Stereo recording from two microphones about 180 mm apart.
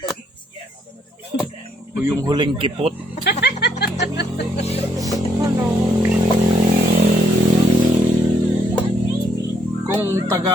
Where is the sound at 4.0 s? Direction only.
70° left (ahead or behind).